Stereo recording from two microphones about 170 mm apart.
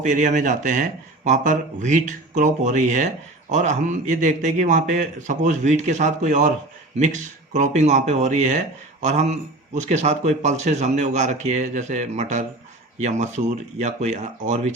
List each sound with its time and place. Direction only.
0.0 s speech: 45° right (ahead or behind)